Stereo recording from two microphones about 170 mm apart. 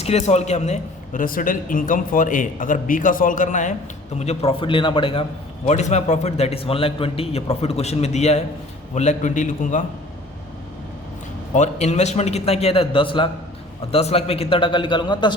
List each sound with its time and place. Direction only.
0.0 s a man's voice: 40° left (ahead or behind)
5.6 s a man's voice: 40° left (ahead or behind)
11.5 s a man's voice: 45° left (ahead or behind); by 15.4 s 25° left (ahead or behind)